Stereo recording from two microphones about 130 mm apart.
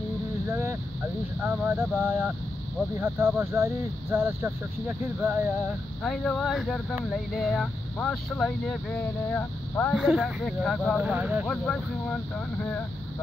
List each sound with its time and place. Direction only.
0.5 s a sound: 20° right (ahead or behind)
1.4 s speech: 10° right (ahead or behind)
6.0 s speech: 5° left (ahead or behind)
9.9 s speech: 5° right (ahead or behind)
11.0 s speech: 10° right (ahead or behind)
11.4 s speech: 5° left (ahead or behind)